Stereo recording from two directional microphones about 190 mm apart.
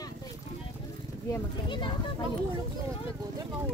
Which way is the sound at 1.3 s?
25° left (ahead or behind).